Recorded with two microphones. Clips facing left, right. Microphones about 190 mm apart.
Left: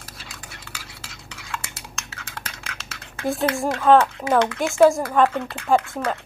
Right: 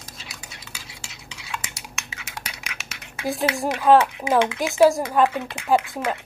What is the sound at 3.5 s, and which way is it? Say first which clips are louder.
Speech: even; 15° right (ahead or behind).